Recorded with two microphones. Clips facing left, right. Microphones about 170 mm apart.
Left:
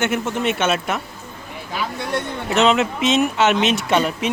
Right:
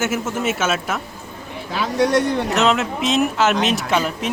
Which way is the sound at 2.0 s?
90° right.